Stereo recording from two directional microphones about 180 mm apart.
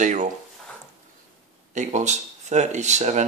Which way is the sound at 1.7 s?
40° right (ahead or behind).